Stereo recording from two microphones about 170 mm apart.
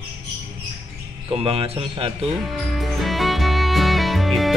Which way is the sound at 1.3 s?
35° right (ahead or behind).